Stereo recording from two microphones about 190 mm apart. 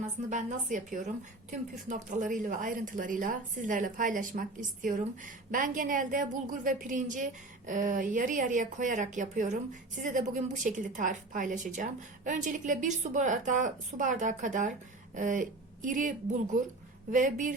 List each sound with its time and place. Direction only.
0.0 s a woman's voice: 40° right (ahead or behind)